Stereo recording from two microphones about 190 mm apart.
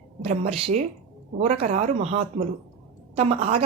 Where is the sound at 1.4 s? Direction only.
40° right (ahead or behind).